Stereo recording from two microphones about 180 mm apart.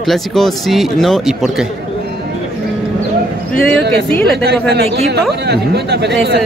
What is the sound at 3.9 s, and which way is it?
Speech, 65° right (ahead or behind).